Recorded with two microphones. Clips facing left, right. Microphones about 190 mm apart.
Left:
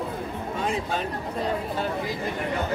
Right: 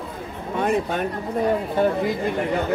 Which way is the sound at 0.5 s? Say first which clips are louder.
Right 7 dB; 60° right (ahead or behind).